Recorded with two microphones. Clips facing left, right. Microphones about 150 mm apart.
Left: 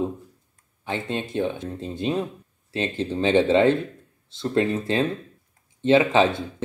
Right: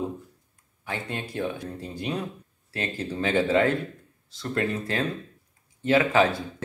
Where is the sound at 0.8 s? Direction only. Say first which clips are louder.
Left 5 dB; 25° left (ahead or behind).